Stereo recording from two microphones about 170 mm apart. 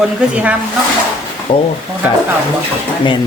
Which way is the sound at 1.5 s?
30° left (ahead or behind).